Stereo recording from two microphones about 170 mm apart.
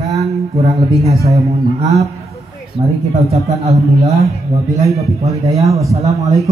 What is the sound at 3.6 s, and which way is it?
Speech, 35° right (ahead or behind).